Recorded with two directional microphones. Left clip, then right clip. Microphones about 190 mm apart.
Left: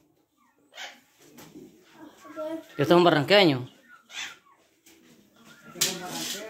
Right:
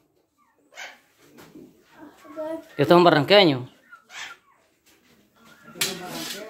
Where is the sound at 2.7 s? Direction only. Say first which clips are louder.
Right 4 dB; 15° right (ahead or behind).